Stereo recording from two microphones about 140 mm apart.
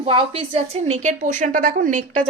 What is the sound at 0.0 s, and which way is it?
A woman's voice, 45° right (ahead or behind).